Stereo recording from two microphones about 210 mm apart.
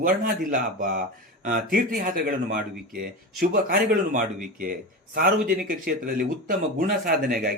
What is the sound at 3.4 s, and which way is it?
A man's voice, 45° right (ahead or behind).